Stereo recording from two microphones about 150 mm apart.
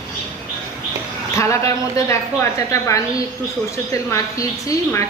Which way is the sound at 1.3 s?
20° left (ahead or behind).